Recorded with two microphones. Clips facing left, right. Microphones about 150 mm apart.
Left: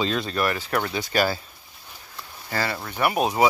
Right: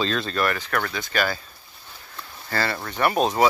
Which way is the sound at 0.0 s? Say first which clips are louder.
Even; 15° left (ahead or behind).